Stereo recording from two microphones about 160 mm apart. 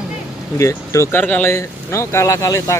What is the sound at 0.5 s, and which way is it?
Speech, 20° left (ahead or behind).